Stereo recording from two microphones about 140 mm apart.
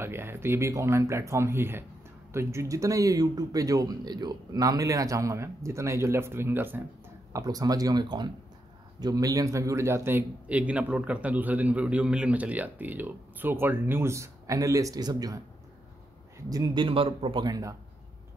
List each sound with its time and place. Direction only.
0.0 s a man's voice: 15° right (ahead or behind)
7.3 s a man's voice: 25° right (ahead or behind)